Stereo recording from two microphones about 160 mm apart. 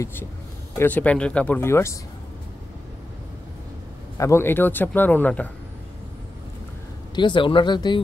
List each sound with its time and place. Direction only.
0.0 s speech: 15° left (ahead or behind)
4.2 s speech: 15° left (ahead or behind)
7.2 s speech: 30° left (ahead or behind)